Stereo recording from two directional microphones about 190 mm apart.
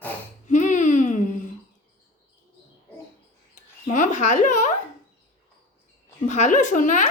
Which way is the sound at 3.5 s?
40° left (ahead or behind).